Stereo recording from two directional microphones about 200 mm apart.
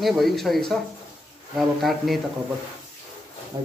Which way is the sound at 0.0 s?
Centre (ahead or behind).